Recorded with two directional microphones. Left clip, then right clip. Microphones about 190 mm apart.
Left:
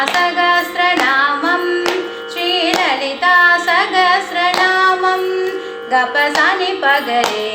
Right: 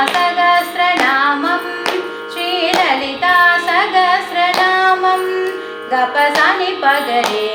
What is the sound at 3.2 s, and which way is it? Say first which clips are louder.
Hands: left 1 dB; 15° left (ahead or behind).